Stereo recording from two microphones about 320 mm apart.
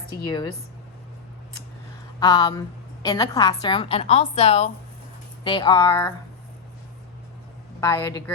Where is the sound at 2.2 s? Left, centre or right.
Centre.